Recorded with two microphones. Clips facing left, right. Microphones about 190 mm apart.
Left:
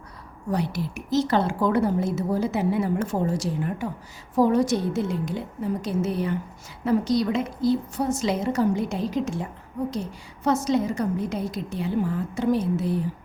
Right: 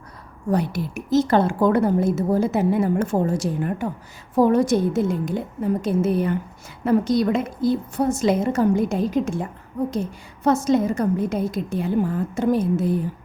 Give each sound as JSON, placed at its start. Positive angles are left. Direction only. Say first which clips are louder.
{"t": 0.5, "sound": "a woman's voice", "louder": "right 4 dB", "side_deg": -50}